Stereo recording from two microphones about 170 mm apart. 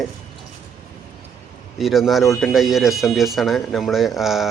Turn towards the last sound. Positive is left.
turn(degrees=0)  # may be behind; listen again after turning